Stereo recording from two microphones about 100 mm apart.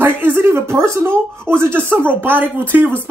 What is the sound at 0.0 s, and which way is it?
Speech, 20° right (ahead or behind).